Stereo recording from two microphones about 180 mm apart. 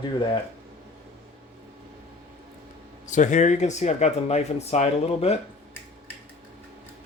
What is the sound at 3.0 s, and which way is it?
Speech, 45° left (ahead or behind).